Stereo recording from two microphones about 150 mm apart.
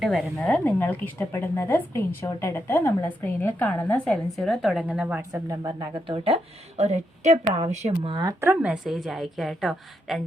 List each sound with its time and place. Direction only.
0.0 s speech: centre (ahead or behind)
5.3 s speech: 25° right (ahead or behind); by 8.1 s 45° right (ahead or behind)
8.1 s a woman's voice: 25° right (ahead or behind); by 10.2 s centre (ahead or behind)